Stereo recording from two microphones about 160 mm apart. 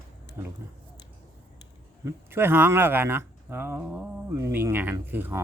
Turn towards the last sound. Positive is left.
turn(degrees=-15)  # may be behind; listen again after turning